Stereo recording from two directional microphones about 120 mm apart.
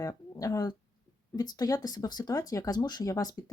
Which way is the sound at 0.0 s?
30° left (ahead or behind).